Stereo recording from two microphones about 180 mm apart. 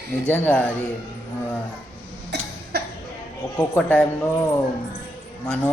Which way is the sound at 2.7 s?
60° right (ahead or behind).